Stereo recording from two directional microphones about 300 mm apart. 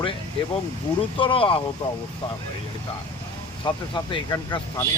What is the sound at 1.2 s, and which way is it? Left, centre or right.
Speech, centre.